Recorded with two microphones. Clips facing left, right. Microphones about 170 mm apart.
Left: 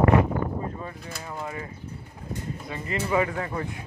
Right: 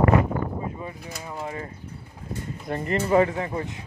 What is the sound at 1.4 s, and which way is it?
Speech, 35° right (ahead or behind).